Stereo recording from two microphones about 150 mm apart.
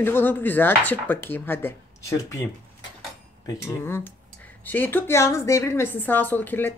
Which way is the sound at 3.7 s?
15° left (ahead or behind).